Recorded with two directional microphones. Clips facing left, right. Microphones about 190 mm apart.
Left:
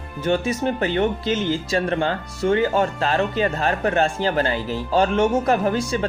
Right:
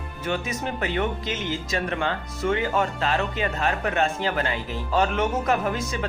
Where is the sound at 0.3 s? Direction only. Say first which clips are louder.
Left 7 dB; 30° left (ahead or behind).